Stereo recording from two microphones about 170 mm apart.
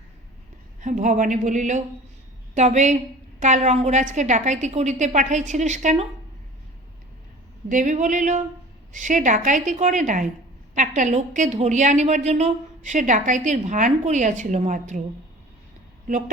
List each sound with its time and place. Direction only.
0.8 s a woman's voice: 45° right (ahead or behind)
7.7 s a woman's voice: 50° right (ahead or behind)